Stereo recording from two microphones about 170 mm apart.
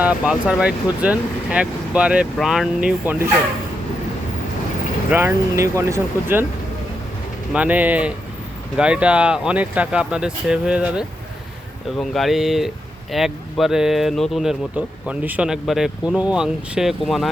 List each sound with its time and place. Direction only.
0.0 s speech: 5° right (ahead or behind)
5.1 s speech: 15° right (ahead or behind)
7.5 s speech: 10° right (ahead or behind)